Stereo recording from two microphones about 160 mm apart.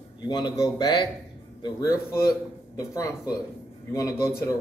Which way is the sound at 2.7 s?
20° left (ahead or behind).